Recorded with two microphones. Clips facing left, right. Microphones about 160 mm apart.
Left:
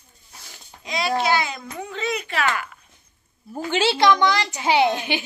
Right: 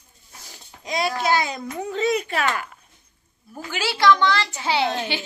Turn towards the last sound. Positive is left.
turn(degrees=15)  # may be behind; listen again after turning